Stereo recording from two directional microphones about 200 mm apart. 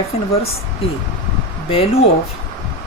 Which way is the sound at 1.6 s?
30° left (ahead or behind).